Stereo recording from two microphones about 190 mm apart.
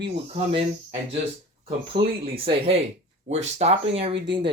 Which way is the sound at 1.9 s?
30° right (ahead or behind).